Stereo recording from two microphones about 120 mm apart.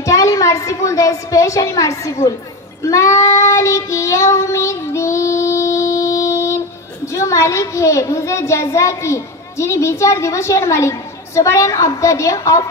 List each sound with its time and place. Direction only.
0.0 s a woman's voice: 25° left (ahead or behind)
2.8 s child singing: 25° left (ahead or behind)
7.1 s a child's voice: 25° left (ahead or behind)